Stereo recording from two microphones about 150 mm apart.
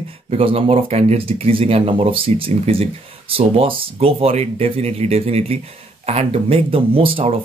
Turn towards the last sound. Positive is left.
turn(degrees=-40)  # may be behind; listen again after turning